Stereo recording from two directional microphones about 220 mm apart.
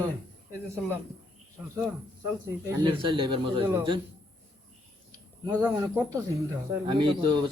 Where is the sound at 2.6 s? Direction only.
20° right (ahead or behind).